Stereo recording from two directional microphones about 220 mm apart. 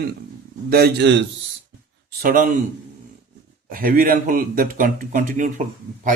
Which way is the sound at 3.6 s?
40° right (ahead or behind).